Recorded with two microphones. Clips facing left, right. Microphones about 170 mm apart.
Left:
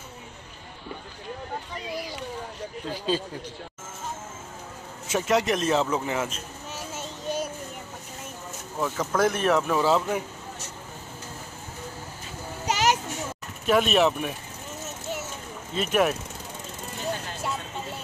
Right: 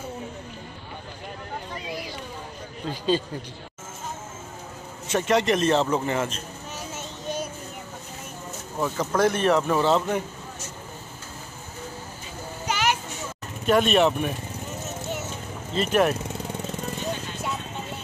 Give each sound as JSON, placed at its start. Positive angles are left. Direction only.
{"t": 2.9, "sound": "speech", "side_deg": 5}
{"t": 5.0, "sound": "speech", "side_deg": 5}
{"t": 8.7, "sound": "speech", "side_deg": -5}
{"t": 12.6, "sound": "children playing", "side_deg": 35}
{"t": 13.7, "sound": "speech", "side_deg": 0}
{"t": 15.7, "sound": "speech", "side_deg": 5}